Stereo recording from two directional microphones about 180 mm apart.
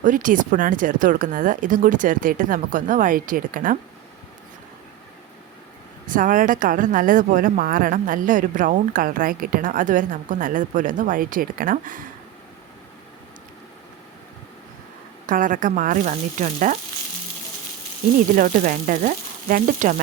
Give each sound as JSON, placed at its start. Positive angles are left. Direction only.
{"t": 0.0, "sound": "speech", "side_deg": -45}
{"t": 6.1, "sound": "speech", "side_deg": -45}
{"t": 15.3, "sound": "speech", "side_deg": -50}
{"t": 18.3, "sound": "speech", "side_deg": -50}